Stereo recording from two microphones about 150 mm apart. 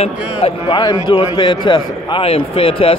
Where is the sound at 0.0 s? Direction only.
45° left (ahead or behind).